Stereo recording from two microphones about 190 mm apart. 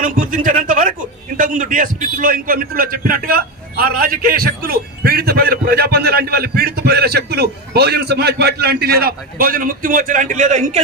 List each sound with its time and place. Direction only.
0.0 s a man's voice: 45° right (ahead or behind)